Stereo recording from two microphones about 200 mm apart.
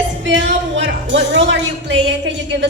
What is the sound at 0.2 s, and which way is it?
A man's voice, 65° right (ahead or behind).